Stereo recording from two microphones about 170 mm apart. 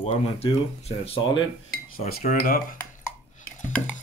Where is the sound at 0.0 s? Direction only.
35° left (ahead or behind).